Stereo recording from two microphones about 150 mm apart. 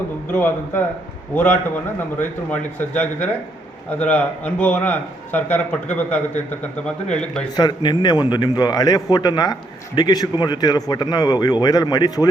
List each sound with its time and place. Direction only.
0.3 s a man's voice: 15° left (ahead or behind)
2.0 s a man's voice: 15° left (ahead or behind)
7.5 s a man's voice: 30° left (ahead or behind)